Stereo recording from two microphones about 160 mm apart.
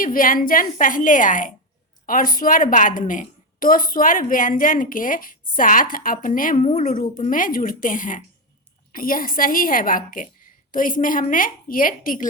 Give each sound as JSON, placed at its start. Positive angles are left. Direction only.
{"t": 0.0, "sound": "a woman's voice", "side_deg": 60}